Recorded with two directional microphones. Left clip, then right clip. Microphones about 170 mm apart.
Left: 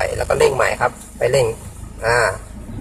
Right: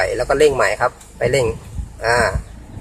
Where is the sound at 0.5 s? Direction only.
30° right (ahead or behind).